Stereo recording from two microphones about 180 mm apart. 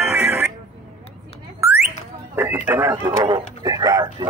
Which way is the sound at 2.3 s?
10° right (ahead or behind).